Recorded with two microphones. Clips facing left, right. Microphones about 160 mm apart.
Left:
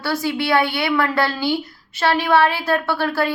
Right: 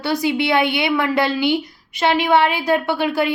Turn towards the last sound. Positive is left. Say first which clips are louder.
# right 1 dB
turn(degrees=-15)  # may be behind; listen again after turning